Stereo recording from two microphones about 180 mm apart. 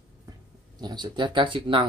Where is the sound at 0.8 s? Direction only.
25° right (ahead or behind).